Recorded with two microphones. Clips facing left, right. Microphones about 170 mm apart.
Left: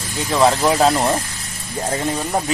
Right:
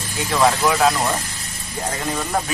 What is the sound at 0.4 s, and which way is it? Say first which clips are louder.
Speech: left 2 dB; 30° left (ahead or behind).